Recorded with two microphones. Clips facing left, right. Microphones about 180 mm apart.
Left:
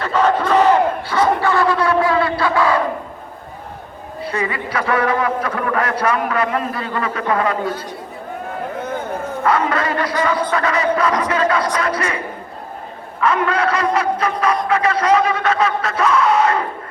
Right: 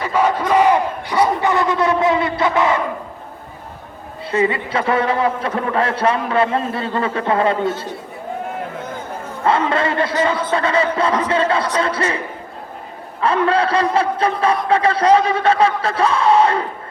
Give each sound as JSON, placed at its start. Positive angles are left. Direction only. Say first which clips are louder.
{"t": 0.0, "sound": "battle cry", "louder": "left 1 dB", "side_deg": -10}
{"t": 4.2, "sound": "a man's voice", "louder": "right 4 dB", "side_deg": -25}
{"t": 9.4, "sound": "a man's voice", "louder": "right 2 dB", "side_deg": -25}
{"t": 13.2, "sound": "a man's voice", "louder": "right 1 dB", "side_deg": -30}